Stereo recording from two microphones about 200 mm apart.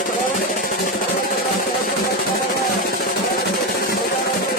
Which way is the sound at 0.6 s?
45° left (ahead or behind).